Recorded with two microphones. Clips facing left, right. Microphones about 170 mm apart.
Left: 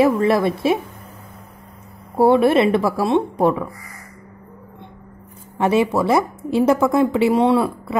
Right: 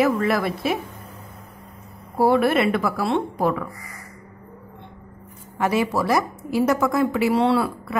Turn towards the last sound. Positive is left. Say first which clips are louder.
# left 3 dB
turn(degrees=25)  # may be behind; listen again after turning